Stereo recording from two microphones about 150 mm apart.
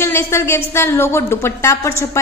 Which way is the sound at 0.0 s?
15° left (ahead or behind).